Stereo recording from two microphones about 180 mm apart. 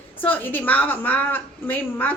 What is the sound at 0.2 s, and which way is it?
A woman's voice, 10° left (ahead or behind).